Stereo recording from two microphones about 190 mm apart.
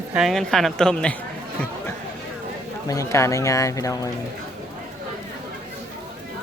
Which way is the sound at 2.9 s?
15° left (ahead or behind).